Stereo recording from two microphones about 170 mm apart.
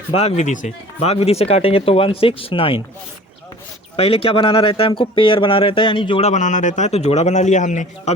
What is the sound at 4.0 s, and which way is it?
A man's voice, 35° left (ahead or behind).